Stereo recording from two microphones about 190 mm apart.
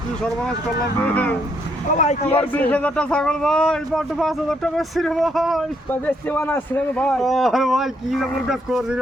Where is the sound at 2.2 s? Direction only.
10° left (ahead or behind).